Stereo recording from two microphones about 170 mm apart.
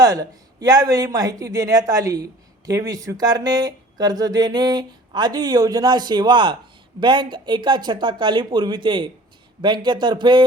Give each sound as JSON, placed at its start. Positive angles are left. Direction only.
{"t": 0.0, "sound": "speech", "side_deg": -20}